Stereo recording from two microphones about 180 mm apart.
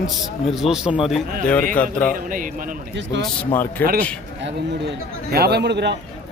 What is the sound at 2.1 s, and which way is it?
Speech, 50° right (ahead or behind).